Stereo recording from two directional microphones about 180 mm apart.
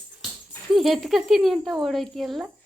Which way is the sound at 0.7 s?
Centre (ahead or behind).